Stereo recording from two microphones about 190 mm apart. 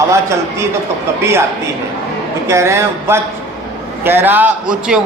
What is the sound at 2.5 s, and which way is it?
A man's voice, 15° right (ahead or behind).